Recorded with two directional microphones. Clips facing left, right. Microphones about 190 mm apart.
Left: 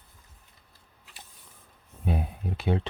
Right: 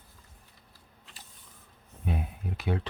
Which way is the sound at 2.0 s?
30° left (ahead or behind).